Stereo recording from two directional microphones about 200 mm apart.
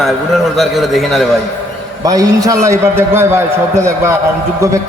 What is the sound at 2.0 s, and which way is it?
A man's voice, 15° right (ahead or behind).